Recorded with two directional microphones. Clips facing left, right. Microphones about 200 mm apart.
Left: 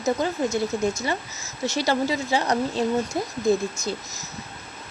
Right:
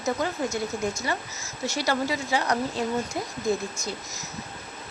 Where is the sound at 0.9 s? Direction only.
25° left (ahead or behind).